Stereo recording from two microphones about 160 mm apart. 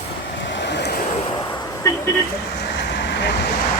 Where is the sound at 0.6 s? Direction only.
90° left.